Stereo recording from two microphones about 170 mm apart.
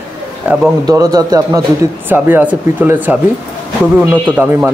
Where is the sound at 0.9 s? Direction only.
20° right (ahead or behind).